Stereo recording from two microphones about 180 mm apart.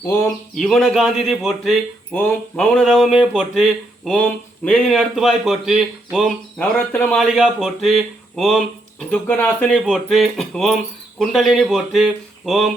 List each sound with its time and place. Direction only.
0.0 s speech: 15° left (ahead or behind)
0.5 s speech: 5° left (ahead or behind)